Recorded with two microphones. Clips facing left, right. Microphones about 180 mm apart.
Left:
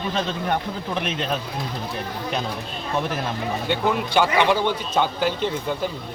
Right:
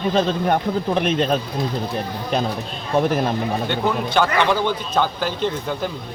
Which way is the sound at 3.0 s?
40° right (ahead or behind).